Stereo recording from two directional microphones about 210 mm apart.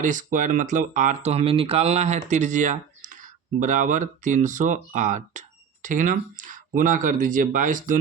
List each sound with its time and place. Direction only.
0.0 s speech: 35° right (ahead or behind)